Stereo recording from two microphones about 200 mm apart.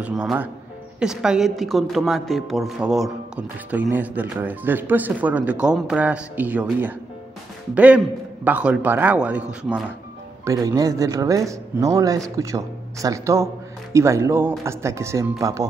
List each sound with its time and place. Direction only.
0.0 s a man's voice: 5° right (ahead or behind)
10.4 s a man's voice: 15° right (ahead or behind)